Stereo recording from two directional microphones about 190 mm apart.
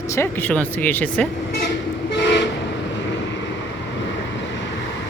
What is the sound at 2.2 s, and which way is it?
Toot, 70° left (ahead or behind).